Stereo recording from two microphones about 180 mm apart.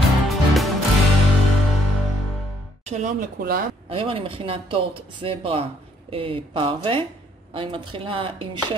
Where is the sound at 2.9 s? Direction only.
45° right (ahead or behind).